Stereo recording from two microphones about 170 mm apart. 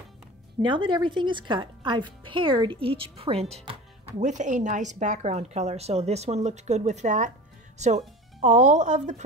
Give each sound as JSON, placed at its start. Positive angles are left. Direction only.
{"t": 0.6, "sound": "a woman's voice", "side_deg": -30}